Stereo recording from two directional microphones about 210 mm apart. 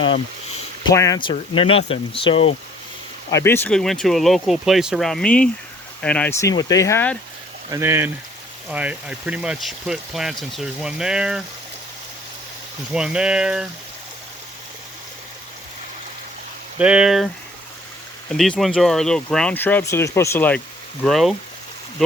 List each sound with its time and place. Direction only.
0.9 s speech: 15° left (ahead or behind)
3.2 s speech: 15° left (ahead or behind)
7.7 s speech: 10° right (ahead or behind)
12.9 s speech: 5° right (ahead or behind)
16.7 s speech: 5° right (ahead or behind)
18.3 s speech: centre (ahead or behind)